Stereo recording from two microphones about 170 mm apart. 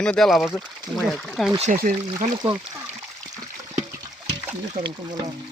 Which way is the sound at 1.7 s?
55° right (ahead or behind).